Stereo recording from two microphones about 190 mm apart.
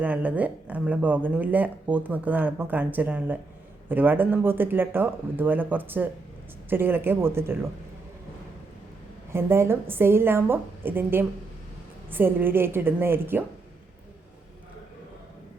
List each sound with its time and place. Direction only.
0.0 s speech: 10° right (ahead or behind)
9.3 s speech: 15° right (ahead or behind)